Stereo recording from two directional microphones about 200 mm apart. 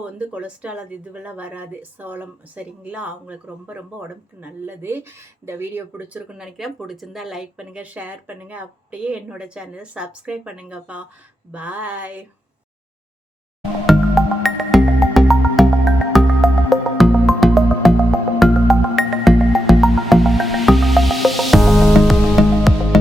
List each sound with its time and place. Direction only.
0.0 s speech: 5° right (ahead or behind)
13.8 s music: centre (ahead or behind)